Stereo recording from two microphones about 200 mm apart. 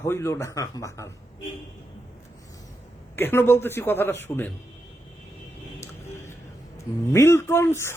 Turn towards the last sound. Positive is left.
turn(degrees=15)  # may be behind; listen again after turning